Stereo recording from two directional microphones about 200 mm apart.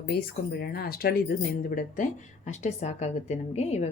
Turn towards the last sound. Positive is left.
turn(degrees=35)  # may be behind; listen again after turning